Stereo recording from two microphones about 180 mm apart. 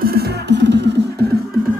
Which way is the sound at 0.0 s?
60° right (ahead or behind).